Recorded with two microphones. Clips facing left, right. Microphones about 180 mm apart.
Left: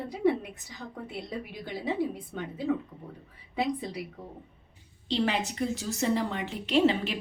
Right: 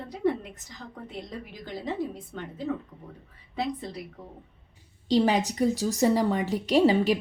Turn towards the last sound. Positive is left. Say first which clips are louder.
# right 3 dB
turn(degrees=-40)  # may be behind; listen again after turning